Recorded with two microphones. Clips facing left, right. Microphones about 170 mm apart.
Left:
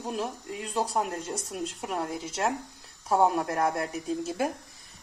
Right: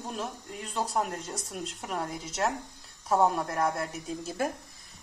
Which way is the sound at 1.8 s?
10° left (ahead or behind).